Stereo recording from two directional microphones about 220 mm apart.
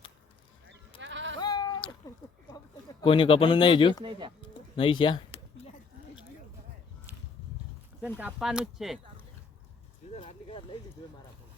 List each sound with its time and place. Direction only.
0.7 s sheep: 55° right (ahead or behind)
1.4 s bleat: 20° left (ahead or behind)
3.0 s speech: 25° left (ahead or behind)
4.0 s speech: 20° right (ahead or behind)
4.4 s music: 20° left (ahead or behind)
8.2 s speech: 5° right (ahead or behind)
10.1 s speech: 25° left (ahead or behind)